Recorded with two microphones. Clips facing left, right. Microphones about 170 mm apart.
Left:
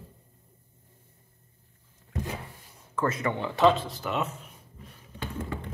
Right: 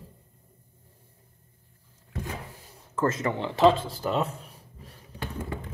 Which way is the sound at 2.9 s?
25° right (ahead or behind).